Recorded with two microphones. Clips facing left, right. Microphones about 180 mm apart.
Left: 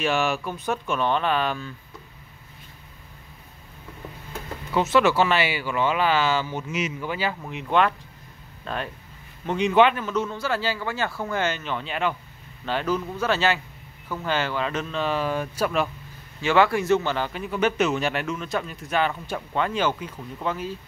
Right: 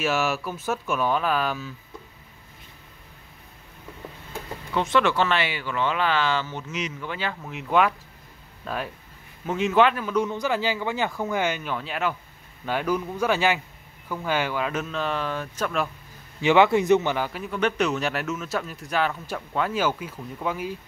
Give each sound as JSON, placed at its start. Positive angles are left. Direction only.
{"t": 0.0, "sound": "speech", "side_deg": -5}
{"t": 4.7, "sound": "speech", "side_deg": 5}
{"t": 16.3, "sound": "speech", "side_deg": -20}
{"t": 17.3, "sound": "speech", "side_deg": 0}